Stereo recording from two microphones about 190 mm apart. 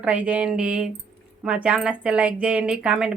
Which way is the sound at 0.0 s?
5° right (ahead or behind).